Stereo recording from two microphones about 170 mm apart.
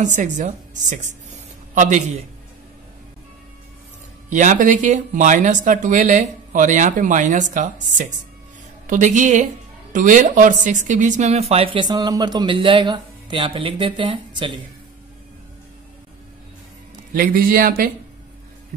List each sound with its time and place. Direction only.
0.0 s a woman's voice: 45° right (ahead or behind)
4.3 s speech: 50° right (ahead or behind)
8.8 s speech: 45° right (ahead or behind); by 14.6 s 30° right (ahead or behind)
17.1 s speech: 55° right (ahead or behind)